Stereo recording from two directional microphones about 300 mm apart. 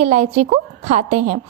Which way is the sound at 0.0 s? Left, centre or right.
Right.